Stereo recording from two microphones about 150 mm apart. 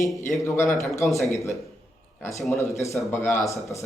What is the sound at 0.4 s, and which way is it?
Speech, 20° left (ahead or behind).